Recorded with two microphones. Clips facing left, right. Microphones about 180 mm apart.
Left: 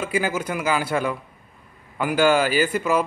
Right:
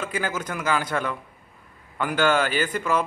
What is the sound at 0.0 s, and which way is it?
A man's voice, 10° left (ahead or behind).